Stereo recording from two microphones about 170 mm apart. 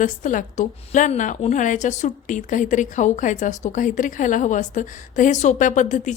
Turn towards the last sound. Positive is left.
turn(degrees=45)  # may be behind; listen again after turning